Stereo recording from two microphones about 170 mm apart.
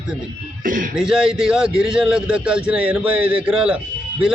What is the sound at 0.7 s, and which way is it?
Speech, 50° right (ahead or behind).